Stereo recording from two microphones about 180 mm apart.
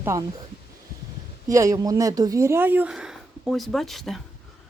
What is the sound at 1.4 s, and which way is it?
Speech, 20° right (ahead or behind).